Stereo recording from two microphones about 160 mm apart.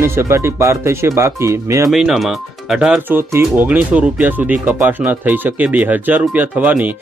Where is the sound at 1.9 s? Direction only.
Centre (ahead or behind).